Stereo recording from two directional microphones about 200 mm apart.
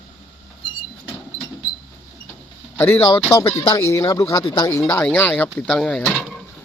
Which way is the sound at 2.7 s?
10° left (ahead or behind).